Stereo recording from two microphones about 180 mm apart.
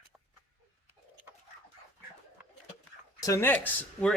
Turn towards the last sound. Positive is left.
turn(degrees=5)  # may be behind; listen again after turning